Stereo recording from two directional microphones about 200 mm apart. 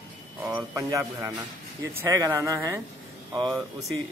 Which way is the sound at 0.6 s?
15° right (ahead or behind).